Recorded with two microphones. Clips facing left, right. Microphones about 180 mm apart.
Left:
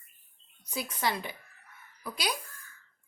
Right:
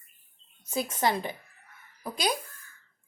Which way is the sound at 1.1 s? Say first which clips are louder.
Right 5 dB; 40° right (ahead or behind).